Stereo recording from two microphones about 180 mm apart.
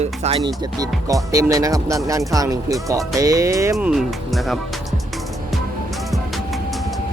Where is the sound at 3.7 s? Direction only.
Centre (ahead or behind).